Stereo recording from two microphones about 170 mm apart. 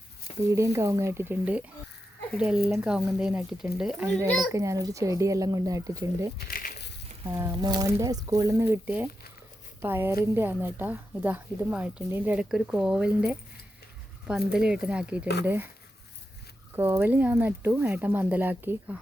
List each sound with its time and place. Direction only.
0.4 s speech: 15° right (ahead or behind)
4.5 s speech: 20° right (ahead or behind)
6.5 s a sound: 55° left (ahead or behind)
7.3 s speech: 20° right (ahead or behind)
16.7 s speech: 15° right (ahead or behind)